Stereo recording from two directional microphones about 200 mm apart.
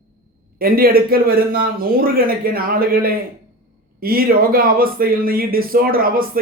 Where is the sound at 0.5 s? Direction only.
45° right (ahead or behind).